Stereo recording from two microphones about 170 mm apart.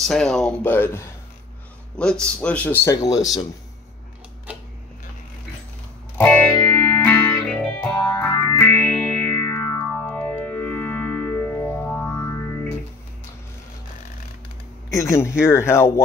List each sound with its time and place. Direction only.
0.0 s a man's voice: centre (ahead or behind)
6.1 s music: 10° left (ahead or behind)
14.9 s a man's voice: 20° left (ahead or behind)